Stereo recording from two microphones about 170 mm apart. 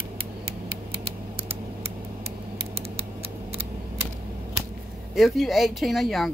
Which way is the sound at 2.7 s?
35° right (ahead or behind).